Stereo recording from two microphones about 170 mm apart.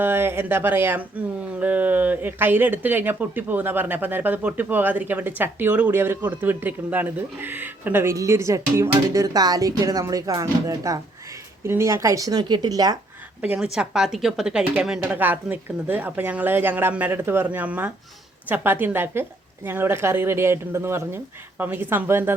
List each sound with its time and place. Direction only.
0.0 s speech: 15° right (ahead or behind)
13.4 s speech: 10° right (ahead or behind)